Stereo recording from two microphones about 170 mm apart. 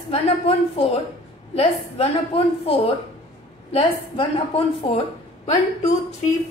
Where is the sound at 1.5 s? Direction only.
35° left (ahead or behind).